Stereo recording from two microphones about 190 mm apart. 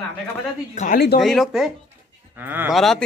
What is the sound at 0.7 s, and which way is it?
Speech, 55° left (ahead or behind).